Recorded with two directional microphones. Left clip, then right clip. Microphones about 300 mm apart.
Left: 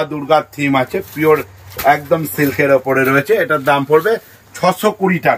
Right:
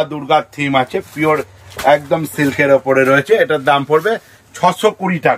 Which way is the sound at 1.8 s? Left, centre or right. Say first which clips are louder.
Even; centre.